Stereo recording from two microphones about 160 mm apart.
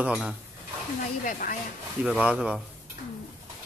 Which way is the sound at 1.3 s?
60° left (ahead or behind).